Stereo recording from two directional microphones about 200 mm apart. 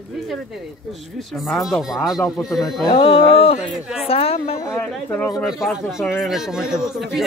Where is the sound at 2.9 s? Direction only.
30° left (ahead or behind).